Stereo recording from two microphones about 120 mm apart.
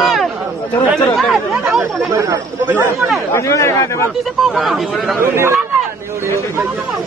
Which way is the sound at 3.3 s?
25° left (ahead or behind).